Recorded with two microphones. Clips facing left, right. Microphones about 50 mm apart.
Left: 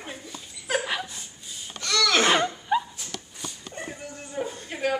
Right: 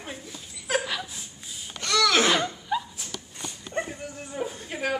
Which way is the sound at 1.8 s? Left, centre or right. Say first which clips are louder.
Right 1 dB; centre.